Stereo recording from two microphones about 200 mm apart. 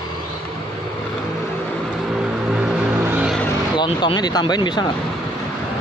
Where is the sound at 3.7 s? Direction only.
25° left (ahead or behind).